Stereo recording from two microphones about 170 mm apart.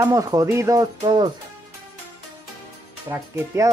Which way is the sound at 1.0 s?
30° right (ahead or behind).